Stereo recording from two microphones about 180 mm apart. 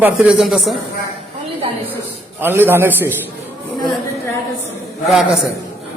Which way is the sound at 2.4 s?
10° right (ahead or behind).